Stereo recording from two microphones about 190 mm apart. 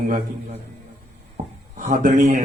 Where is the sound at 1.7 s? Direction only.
50° right (ahead or behind).